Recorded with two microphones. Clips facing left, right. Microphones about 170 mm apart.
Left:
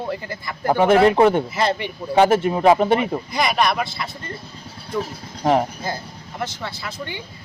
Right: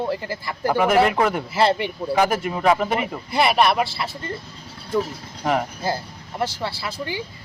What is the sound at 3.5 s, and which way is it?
Speech, 5° right (ahead or behind).